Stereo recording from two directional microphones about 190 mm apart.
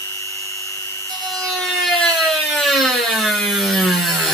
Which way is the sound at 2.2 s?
Centre (ahead or behind).